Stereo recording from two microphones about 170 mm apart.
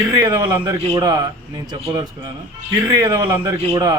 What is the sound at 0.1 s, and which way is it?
A man's voice, 20° right (ahead or behind).